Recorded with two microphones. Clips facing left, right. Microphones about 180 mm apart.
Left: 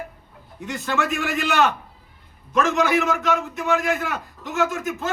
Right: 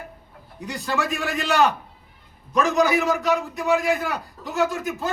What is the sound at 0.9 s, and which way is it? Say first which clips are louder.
A man's voice: left 2 dB; 35° right (ahead or behind).